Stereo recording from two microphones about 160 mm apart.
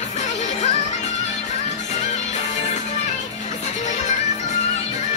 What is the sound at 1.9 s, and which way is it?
Music, 50° left (ahead or behind).